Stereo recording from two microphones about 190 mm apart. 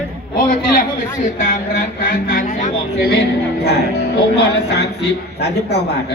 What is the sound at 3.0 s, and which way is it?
A man's voice, 60° left (ahead or behind).